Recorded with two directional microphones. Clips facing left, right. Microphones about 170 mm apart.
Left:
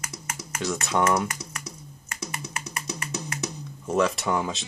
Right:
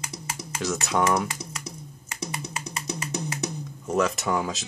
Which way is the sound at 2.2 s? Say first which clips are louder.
Right 2 dB; 60° right (ahead or behind).